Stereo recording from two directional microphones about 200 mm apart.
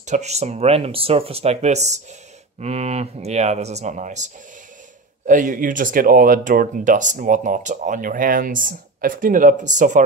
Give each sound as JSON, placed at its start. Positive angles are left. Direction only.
{"t": 0.0, "sound": "speech", "side_deg": -35}